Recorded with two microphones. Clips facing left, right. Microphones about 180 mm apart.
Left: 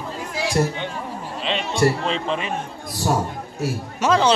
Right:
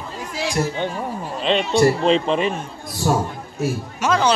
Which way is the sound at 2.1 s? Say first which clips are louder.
Right 7 dB; 35° right (ahead or behind).